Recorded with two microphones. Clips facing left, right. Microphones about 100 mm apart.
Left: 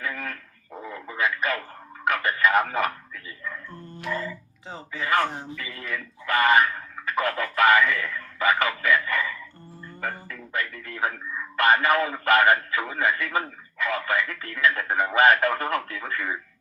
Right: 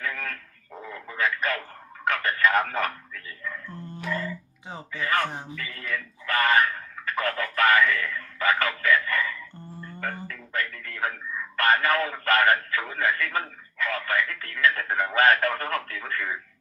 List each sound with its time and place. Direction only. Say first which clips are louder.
0.0 s radio: left 1 dB; 10° left (ahead or behind)
2.0 s a sound: left 1 dB; 10° left (ahead or behind)
4.0 s music: left 1 dB; 20° left (ahead or behind)
4.9 s speech: left 2 dB; 20° left (ahead or behind)
6.2 s a sound: left 2 dB; 20° left (ahead or behind)
10.0 s music: left 1 dB; 15° left (ahead or behind)
11.5 s radio: left 2 dB; 20° left (ahead or behind)